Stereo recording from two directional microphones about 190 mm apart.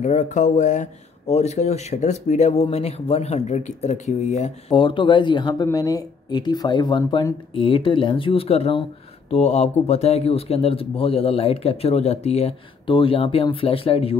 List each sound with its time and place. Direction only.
0.0 s speech: 40° left (ahead or behind)